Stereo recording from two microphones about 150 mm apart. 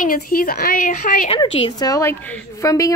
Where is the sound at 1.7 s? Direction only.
25° left (ahead or behind).